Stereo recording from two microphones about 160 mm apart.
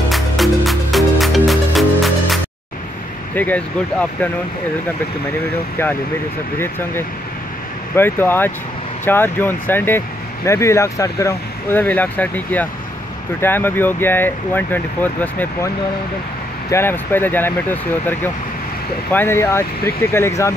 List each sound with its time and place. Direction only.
0.1 s music: centre (ahead or behind)
3.3 s speech: 10° left (ahead or behind)
7.9 s speech: 15° left (ahead or behind)
16.7 s speech: 15° left (ahead or behind)